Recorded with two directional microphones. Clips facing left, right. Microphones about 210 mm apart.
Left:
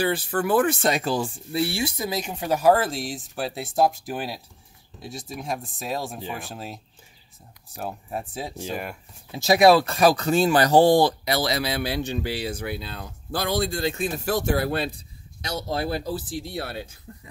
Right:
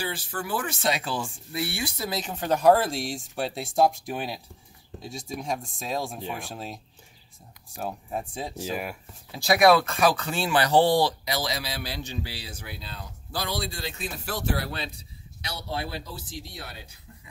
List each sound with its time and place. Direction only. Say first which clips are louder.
0.0 s speech: left 9 dB; 55° left (ahead or behind); by 8.5 s 5° left (ahead or behind)
8.5 s speech: right 1 dB; 5° right (ahead or behind)
9.3 s speech: left 3 dB; 25° left (ahead or behind); by 17.0 s 55° left (ahead or behind)